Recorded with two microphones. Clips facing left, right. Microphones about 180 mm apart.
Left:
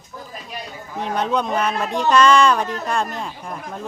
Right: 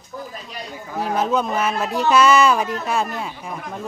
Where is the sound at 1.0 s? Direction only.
5° right (ahead or behind).